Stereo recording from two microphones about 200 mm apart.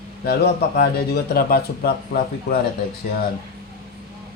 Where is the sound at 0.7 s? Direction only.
50° left (ahead or behind).